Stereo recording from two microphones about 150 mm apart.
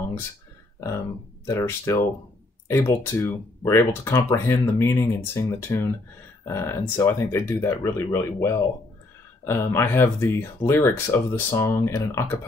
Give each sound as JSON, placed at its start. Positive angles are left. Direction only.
{"t": 0.7, "sound": "speech", "side_deg": 20}